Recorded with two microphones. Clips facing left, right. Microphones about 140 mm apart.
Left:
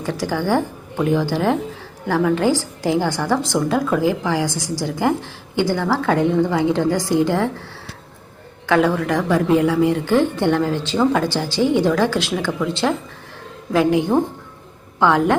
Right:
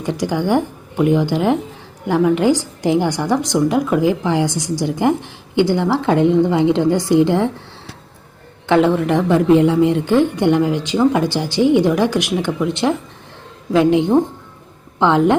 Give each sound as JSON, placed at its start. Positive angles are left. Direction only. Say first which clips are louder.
{"t": 0.0, "sound": "a woman's voice", "louder": "right 3 dB", "side_deg": -20}
{"t": 8.6, "sound": "a woman's voice", "louder": "right 3 dB", "side_deg": -20}